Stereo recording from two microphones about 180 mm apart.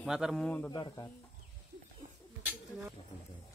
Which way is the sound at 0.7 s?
25° left (ahead or behind).